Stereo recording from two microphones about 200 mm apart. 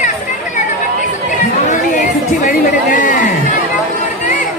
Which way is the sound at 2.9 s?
40° left (ahead or behind).